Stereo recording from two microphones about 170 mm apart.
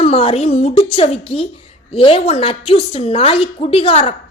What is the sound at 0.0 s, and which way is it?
A woman's voice, 35° left (ahead or behind).